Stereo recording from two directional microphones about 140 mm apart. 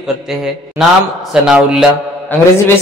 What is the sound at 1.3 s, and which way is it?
Speech, 5° right (ahead or behind).